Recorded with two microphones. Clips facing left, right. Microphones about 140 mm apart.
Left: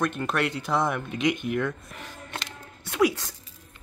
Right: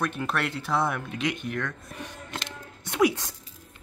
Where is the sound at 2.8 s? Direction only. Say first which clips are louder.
Even; 20° right (ahead or behind).